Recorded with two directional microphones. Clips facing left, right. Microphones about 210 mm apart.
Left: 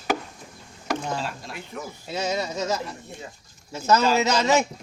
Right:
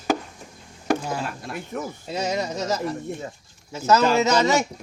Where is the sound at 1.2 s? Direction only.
50° right (ahead or behind).